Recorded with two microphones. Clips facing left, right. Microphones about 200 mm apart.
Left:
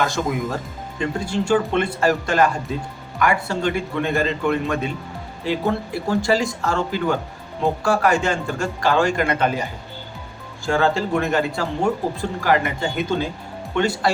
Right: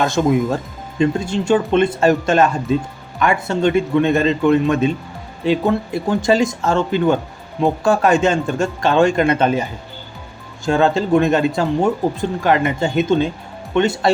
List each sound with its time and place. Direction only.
0.0 s speech: 25° right (ahead or behind)
10.7 s speech: 20° right (ahead or behind)